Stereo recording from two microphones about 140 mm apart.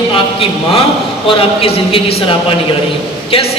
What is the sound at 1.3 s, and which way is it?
Speech, 40° left (ahead or behind).